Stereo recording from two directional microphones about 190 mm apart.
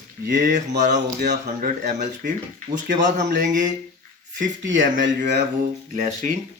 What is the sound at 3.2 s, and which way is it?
Speech, 65° right (ahead or behind).